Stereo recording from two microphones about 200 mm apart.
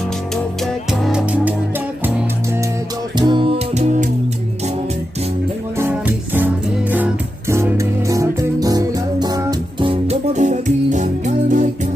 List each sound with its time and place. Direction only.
1.0 s music: 5° right (ahead or behind)
3.2 s music: 25° right (ahead or behind)
5.8 s music: 10° right (ahead or behind); by 11.7 s 40° right (ahead or behind)